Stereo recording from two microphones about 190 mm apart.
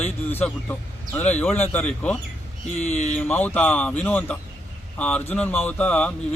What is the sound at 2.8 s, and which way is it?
Speech, 35° left (ahead or behind).